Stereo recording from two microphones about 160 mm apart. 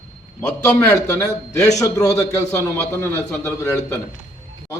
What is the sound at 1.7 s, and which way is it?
A man's voice, 20° left (ahead or behind).